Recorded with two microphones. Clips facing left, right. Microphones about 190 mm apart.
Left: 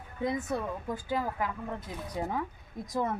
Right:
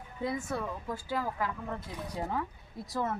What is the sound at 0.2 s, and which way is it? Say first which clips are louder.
Speech: left 2 dB; 20° left (ahead or behind).